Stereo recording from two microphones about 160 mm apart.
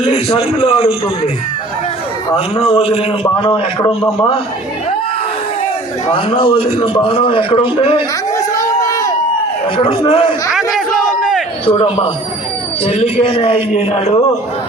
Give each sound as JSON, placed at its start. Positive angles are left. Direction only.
{"t": 0.1, "sound": "a man's voice", "side_deg": 35}
{"t": 2.3, "sound": "a man's voice", "side_deg": 35}
{"t": 6.1, "sound": "a man's voice", "side_deg": 35}
{"t": 8.4, "sound": "a sound", "side_deg": 20}
{"t": 9.7, "sound": "a man's voice", "side_deg": 35}
{"t": 10.5, "sound": "speech", "side_deg": 0}
{"t": 11.6, "sound": "a man's voice", "side_deg": 35}